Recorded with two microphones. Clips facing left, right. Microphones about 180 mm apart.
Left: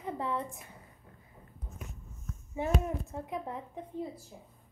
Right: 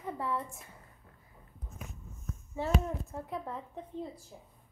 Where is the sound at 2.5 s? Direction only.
15° left (ahead or behind).